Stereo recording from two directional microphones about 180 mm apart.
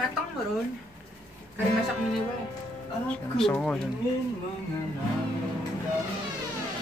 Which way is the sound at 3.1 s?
5° left (ahead or behind).